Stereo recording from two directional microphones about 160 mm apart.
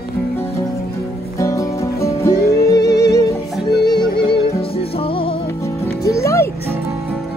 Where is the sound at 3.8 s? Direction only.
25° left (ahead or behind).